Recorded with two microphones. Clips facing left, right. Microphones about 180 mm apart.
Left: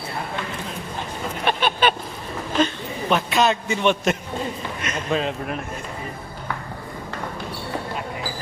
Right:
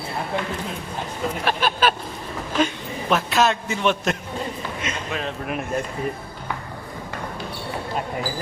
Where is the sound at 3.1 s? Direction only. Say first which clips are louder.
Even; centre (ahead or behind).